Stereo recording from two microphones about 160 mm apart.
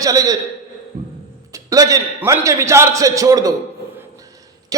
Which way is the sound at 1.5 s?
20° right (ahead or behind).